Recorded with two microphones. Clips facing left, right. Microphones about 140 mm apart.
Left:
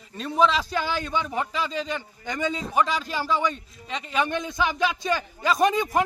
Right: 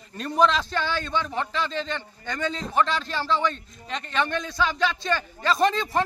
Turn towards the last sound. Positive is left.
turn(degrees=15)  # may be behind; listen again after turning